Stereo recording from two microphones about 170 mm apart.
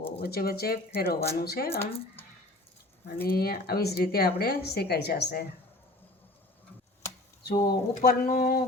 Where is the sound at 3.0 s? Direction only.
65° left (ahead or behind).